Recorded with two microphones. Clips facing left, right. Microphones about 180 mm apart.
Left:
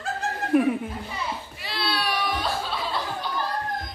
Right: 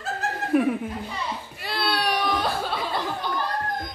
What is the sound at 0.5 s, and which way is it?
Speech, centre (ahead or behind).